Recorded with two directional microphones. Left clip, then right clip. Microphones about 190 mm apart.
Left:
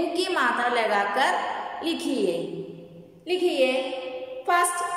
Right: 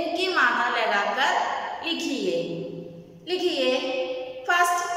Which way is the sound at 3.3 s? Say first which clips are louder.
Left 1 dB; 20° left (ahead or behind).